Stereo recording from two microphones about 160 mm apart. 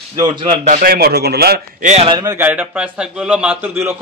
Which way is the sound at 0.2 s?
30° right (ahead or behind).